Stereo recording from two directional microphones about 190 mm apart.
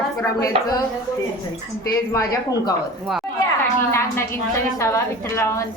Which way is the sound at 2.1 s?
15° left (ahead or behind).